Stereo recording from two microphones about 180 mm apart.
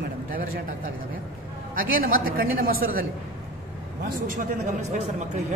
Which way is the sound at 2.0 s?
55° right (ahead or behind).